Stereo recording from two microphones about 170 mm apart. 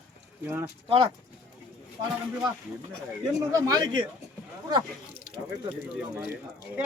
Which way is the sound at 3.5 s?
20° right (ahead or behind).